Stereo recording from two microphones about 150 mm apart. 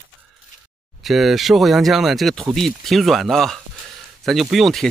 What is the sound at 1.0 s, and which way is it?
Speech, centre (ahead or behind).